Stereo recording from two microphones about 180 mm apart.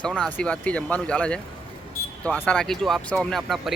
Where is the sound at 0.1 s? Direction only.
5° right (ahead or behind).